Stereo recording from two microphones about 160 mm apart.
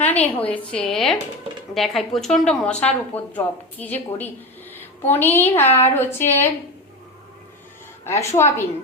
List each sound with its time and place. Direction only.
0.0 s a woman's voice: 10° left (ahead or behind)
8.0 s a woman's voice: 15° left (ahead or behind)